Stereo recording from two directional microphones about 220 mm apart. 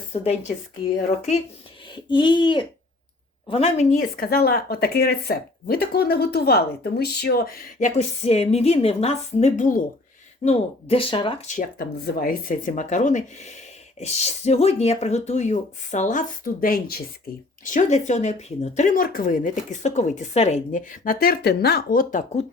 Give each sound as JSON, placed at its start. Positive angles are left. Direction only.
{"t": 0.1, "sound": "speech", "side_deg": 30}
{"t": 2.0, "sound": "speech", "side_deg": 20}